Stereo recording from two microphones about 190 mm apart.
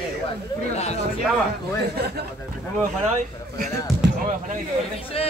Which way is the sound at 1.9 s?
55° right (ahead or behind).